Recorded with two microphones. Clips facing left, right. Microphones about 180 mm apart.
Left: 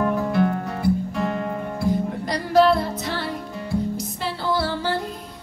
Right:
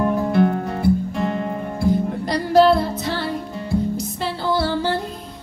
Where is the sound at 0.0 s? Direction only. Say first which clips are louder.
Right 3 dB; 25° right (ahead or behind).